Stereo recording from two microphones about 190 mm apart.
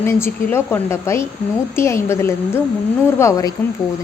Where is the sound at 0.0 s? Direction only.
10° left (ahead or behind).